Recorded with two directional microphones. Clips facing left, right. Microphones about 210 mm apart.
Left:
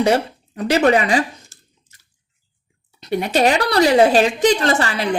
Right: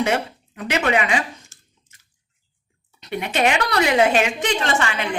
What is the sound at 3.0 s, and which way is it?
A woman's voice, 35° left (ahead or behind).